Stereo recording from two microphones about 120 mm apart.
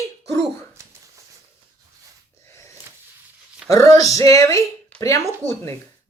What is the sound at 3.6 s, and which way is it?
Music, 25° left (ahead or behind).